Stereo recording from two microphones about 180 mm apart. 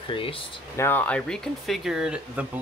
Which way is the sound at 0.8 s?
10° left (ahead or behind).